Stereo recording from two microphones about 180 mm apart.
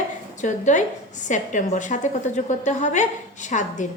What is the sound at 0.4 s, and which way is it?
A woman's voice, 45° left (ahead or behind).